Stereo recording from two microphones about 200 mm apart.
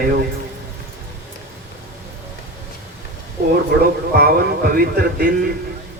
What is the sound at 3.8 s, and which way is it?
A man's voice, 50° right (ahead or behind).